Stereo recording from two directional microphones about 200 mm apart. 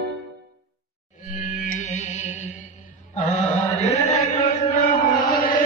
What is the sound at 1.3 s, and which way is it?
Music, 40° left (ahead or behind).